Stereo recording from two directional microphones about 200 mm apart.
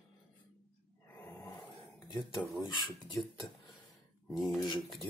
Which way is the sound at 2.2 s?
Centre (ahead or behind).